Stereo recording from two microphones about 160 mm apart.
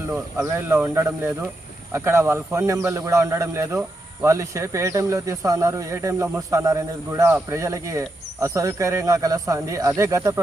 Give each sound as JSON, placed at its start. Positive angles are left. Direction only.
{"t": 0.3, "sound": "speech", "side_deg": -20}